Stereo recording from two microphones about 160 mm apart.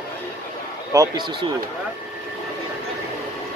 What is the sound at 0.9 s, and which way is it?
Speech, 25° right (ahead or behind).